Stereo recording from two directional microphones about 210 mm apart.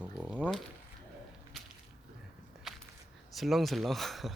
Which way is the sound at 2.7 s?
Centre (ahead or behind).